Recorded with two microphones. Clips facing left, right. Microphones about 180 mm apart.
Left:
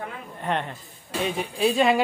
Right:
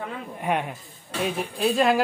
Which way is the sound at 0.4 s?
10° right (ahead or behind).